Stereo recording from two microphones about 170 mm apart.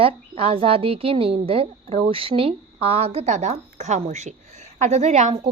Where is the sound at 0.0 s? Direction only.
30° right (ahead or behind).